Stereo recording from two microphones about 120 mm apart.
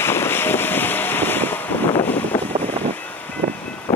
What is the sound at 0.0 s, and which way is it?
Boat, 20° left (ahead or behind).